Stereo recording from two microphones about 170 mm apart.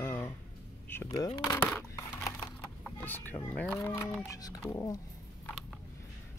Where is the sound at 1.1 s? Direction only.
25° left (ahead or behind).